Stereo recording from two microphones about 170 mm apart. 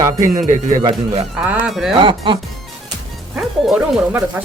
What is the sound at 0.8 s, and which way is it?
Speech, 35° right (ahead or behind).